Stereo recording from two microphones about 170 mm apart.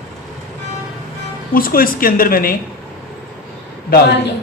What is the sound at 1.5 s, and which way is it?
A man's voice, 55° left (ahead or behind).